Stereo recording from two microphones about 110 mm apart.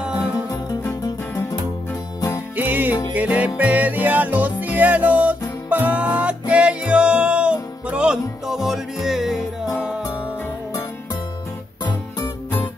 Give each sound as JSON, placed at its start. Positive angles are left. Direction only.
{"t": 2.1, "sound": "music", "side_deg": 30}
{"t": 2.5, "sound": "music", "side_deg": -15}